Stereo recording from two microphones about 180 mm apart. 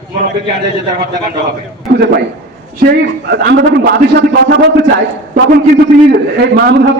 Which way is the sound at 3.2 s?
70° right (ahead or behind).